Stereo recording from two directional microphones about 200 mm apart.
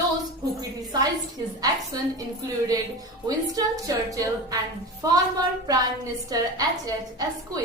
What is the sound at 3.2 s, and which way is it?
A woman's voice, 15° right (ahead or behind).